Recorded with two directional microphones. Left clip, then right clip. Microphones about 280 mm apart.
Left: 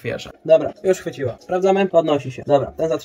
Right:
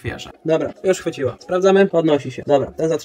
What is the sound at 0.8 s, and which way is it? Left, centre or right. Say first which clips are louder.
Speech: right 1 dB; right.